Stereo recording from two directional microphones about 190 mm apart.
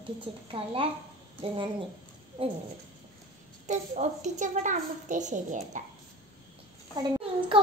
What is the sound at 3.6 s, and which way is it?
A woman's voice, 40° right (ahead or behind).